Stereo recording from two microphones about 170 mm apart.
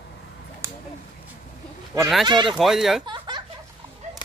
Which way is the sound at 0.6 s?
15° right (ahead or behind).